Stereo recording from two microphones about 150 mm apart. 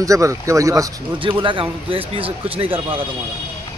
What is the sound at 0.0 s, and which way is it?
Speech, 20° right (ahead or behind).